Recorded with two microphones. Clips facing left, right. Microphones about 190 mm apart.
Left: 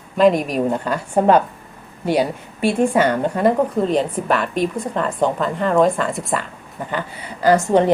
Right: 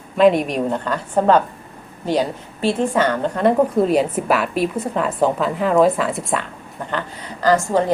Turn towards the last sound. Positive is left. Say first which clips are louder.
# left 2 dB
turn(degrees=15)  # may be behind; listen again after turning